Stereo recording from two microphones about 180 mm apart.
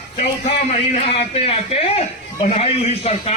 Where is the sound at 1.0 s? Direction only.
35° left (ahead or behind).